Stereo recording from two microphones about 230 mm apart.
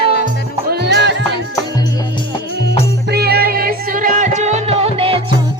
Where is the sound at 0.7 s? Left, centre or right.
Right.